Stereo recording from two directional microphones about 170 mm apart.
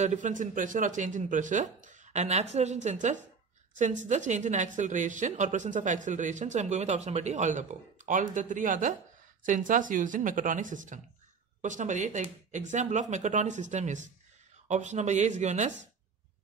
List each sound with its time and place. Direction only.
0.0 s a woman's voice: 45° right (ahead or behind)